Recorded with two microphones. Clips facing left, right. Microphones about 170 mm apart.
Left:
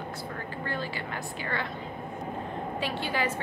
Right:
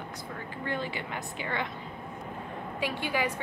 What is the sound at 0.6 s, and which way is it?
A woman's voice, 20° right (ahead or behind).